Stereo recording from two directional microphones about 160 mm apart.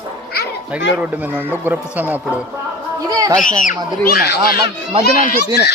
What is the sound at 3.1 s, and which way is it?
Speech, 25° right (ahead or behind).